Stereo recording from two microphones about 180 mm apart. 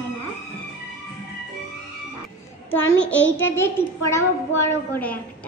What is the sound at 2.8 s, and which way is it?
Speech, 90° left.